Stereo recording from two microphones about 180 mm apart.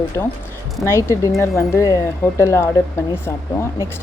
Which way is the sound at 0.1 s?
15° left (ahead or behind).